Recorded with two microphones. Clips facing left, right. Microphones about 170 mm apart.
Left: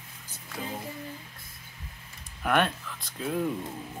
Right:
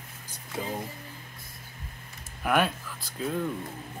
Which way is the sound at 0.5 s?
25° right (ahead or behind).